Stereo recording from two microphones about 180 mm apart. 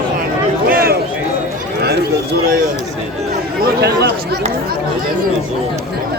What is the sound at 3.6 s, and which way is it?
Chatter, 65° right (ahead or behind).